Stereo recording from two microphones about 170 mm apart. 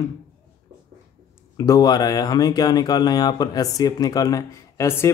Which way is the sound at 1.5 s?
20° left (ahead or behind).